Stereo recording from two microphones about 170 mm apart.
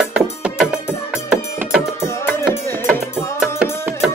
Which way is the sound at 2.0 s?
15° left (ahead or behind).